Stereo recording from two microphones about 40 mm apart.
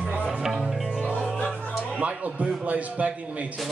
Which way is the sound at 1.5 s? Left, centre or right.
Right.